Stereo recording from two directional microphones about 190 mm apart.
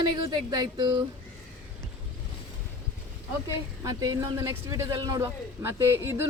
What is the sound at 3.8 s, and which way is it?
Speech, 20° right (ahead or behind).